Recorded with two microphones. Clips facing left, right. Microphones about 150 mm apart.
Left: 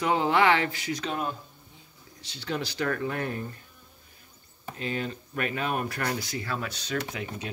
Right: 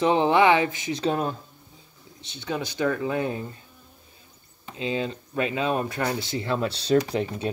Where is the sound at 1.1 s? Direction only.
35° right (ahead or behind).